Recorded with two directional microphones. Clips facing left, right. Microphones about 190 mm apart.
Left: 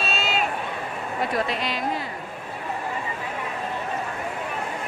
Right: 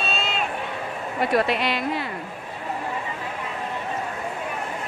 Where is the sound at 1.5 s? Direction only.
65° right (ahead or behind).